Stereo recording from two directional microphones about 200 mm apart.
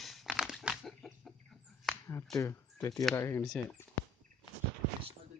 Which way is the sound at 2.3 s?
15° left (ahead or behind).